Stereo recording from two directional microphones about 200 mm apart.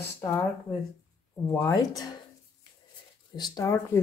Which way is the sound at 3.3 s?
20° left (ahead or behind).